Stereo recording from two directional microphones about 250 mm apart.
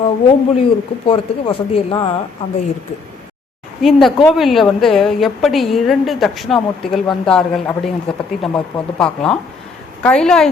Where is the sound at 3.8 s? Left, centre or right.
Centre.